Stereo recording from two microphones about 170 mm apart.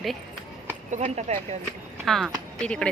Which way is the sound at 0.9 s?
40° right (ahead or behind).